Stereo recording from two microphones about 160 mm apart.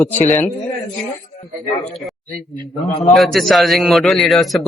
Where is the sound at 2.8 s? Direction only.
20° left (ahead or behind).